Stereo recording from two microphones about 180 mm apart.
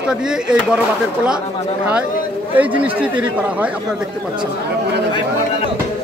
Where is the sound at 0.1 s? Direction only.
5° right (ahead or behind).